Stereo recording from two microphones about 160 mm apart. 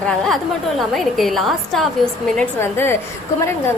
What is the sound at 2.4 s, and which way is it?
Speech, 15° left (ahead or behind).